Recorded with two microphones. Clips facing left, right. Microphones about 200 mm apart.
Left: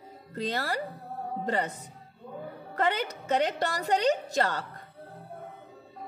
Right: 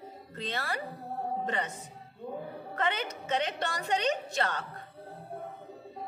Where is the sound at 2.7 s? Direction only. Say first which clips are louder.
Left 4 dB; 35° left (ahead or behind).